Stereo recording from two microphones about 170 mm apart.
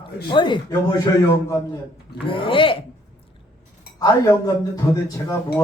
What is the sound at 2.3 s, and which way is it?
Speech, 30° left (ahead or behind).